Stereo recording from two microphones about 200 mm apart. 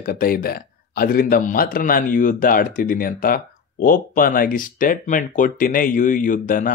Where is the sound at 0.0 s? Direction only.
45° left (ahead or behind).